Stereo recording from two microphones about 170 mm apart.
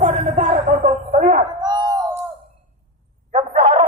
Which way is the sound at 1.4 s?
25° right (ahead or behind).